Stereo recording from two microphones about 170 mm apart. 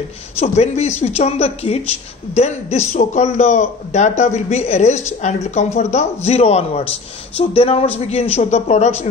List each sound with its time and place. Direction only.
0.4 s a man's voice: 40° left (ahead or behind)